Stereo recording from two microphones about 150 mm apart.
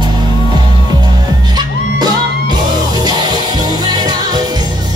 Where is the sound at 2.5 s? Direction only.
30° right (ahead or behind).